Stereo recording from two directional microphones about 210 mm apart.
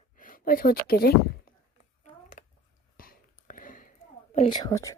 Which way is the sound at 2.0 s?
35° left (ahead or behind).